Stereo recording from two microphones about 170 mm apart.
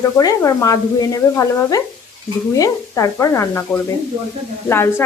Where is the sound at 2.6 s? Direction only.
20° left (ahead or behind).